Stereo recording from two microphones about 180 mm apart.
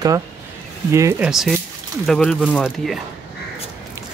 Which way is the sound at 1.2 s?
Centre (ahead or behind).